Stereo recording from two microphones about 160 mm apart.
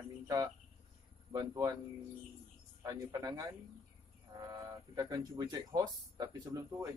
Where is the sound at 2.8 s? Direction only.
20° right (ahead or behind).